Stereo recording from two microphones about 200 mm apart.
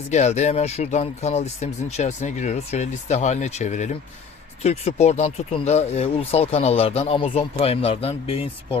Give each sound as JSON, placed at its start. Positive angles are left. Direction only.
{"t": 0.1, "sound": "speech", "side_deg": 35}